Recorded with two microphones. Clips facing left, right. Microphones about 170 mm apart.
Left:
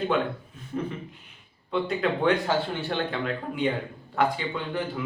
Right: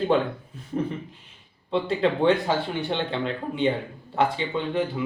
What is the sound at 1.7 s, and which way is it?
Speech, 30° right (ahead or behind).